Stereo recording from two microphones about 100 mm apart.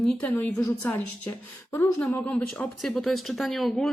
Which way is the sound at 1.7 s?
20° left (ahead or behind).